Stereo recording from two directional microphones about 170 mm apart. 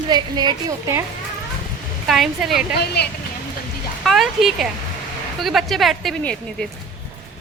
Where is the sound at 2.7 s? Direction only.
70° left (ahead or behind).